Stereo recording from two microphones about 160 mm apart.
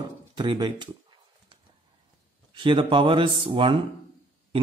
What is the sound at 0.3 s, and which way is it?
Speech, 30° right (ahead or behind).